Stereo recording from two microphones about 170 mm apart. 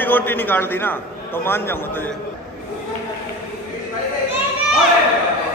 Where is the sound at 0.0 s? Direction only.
10° left (ahead or behind).